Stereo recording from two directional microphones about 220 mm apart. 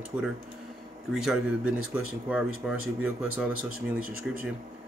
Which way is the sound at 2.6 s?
5° right (ahead or behind).